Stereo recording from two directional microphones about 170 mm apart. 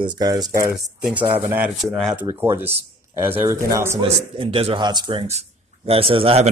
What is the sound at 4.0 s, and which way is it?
A man's voice, 30° right (ahead or behind).